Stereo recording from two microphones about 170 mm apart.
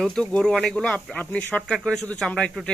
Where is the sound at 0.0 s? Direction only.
5° left (ahead or behind).